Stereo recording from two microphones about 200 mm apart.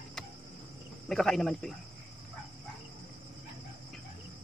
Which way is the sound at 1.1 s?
Centre (ahead or behind).